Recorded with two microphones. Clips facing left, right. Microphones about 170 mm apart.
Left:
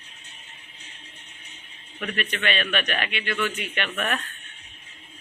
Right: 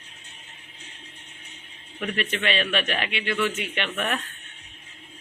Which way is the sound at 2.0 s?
25° right (ahead or behind).